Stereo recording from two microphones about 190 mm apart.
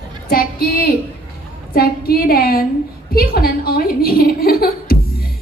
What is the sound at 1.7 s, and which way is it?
Speech, 50° left (ahead or behind).